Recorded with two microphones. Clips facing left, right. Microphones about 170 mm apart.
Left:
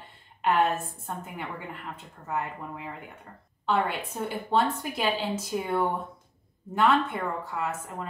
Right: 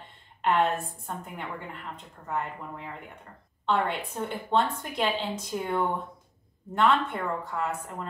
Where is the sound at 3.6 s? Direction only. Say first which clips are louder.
Even; 5° left (ahead or behind).